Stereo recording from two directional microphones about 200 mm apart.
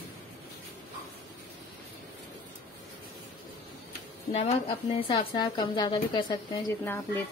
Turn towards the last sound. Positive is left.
turn(degrees=10)  # may be behind; listen again after turning